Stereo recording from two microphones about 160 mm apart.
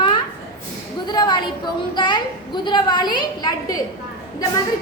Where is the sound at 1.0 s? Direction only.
25° left (ahead or behind).